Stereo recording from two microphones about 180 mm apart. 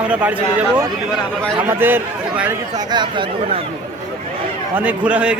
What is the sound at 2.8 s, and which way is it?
Speech, 25° right (ahead or behind).